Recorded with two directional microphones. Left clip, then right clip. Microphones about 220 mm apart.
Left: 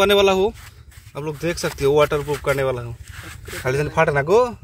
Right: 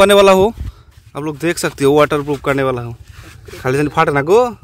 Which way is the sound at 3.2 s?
25° left (ahead or behind).